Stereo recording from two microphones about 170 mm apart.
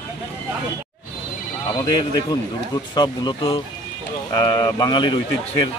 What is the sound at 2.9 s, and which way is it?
Speech, 25° left (ahead or behind).